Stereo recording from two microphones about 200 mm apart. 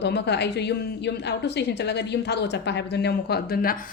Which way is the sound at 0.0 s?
55° left (ahead or behind).